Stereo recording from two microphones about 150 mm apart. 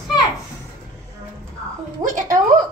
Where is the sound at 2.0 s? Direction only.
25° right (ahead or behind).